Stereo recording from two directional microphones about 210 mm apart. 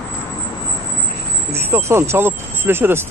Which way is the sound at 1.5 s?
10° right (ahead or behind).